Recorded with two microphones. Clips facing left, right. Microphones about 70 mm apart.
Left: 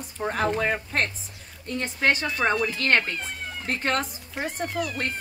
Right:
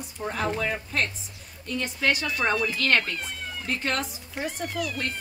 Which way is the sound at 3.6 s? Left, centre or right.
Left.